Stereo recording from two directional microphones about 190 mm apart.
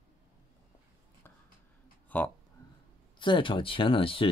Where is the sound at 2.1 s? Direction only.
10° left (ahead or behind).